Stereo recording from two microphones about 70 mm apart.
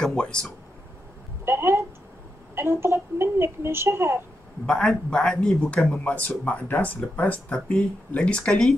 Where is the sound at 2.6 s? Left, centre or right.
Right.